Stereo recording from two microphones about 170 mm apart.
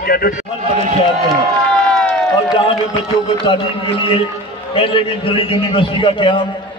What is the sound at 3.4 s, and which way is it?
A man's voice, 30° left (ahead or behind).